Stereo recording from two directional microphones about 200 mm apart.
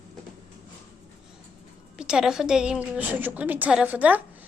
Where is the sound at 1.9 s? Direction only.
5° right (ahead or behind).